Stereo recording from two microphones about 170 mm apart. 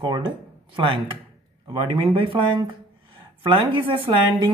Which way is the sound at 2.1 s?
30° right (ahead or behind).